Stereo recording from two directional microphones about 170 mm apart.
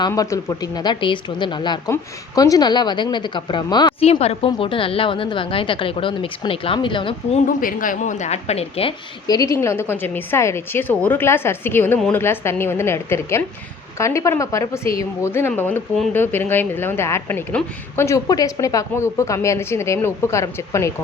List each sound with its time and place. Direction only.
0.1 s a woman's voice: 20° left (ahead or behind)
4.0 s a woman's voice: 35° left (ahead or behind)
7.4 s a woman's voice: 50° left (ahead or behind); by 9.0 s 35° left (ahead or behind)
9.2 s a woman's voice: 20° left (ahead or behind)